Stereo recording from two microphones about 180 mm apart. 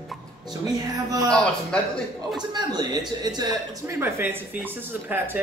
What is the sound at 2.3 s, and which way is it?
Speech, 25° right (ahead or behind).